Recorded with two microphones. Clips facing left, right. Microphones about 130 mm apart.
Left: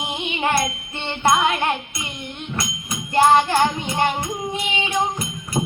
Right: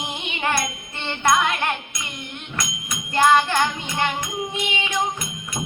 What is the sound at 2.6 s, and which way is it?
Music, 30° left (ahead or behind).